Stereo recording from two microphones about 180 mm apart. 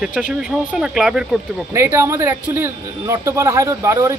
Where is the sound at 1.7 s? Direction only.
15° right (ahead or behind).